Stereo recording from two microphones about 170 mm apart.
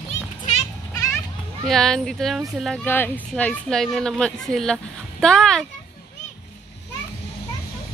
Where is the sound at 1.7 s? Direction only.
Centre (ahead or behind).